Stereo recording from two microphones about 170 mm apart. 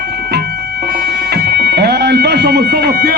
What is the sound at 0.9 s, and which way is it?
Music, 70° right (ahead or behind).